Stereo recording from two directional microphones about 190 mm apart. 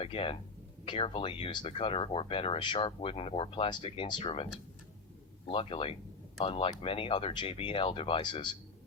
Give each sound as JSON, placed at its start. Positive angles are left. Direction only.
{"t": 0.0, "sound": "speech", "side_deg": 30}
{"t": 5.5, "sound": "speech", "side_deg": 30}